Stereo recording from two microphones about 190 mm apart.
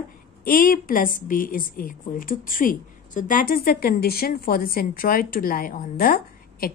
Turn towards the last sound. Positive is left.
turn(degrees=50)  # may be behind; listen again after turning